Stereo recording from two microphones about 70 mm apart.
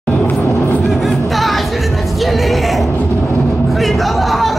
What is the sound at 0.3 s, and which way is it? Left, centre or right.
Music, left.